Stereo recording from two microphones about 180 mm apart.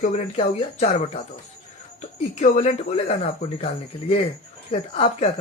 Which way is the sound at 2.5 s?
35° left (ahead or behind).